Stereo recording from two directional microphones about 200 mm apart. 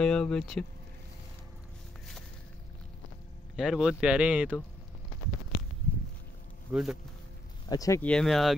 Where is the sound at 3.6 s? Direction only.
Centre (ahead or behind).